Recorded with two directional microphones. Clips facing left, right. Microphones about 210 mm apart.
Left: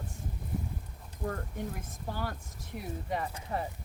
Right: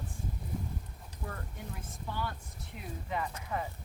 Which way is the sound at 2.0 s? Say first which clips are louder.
Left 1 dB; 40° left (ahead or behind).